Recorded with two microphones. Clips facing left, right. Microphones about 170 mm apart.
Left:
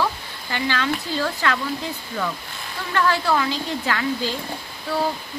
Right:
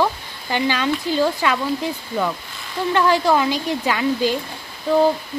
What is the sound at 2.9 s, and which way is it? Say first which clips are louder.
Speech: right 4 dB; 15° right (ahead or behind).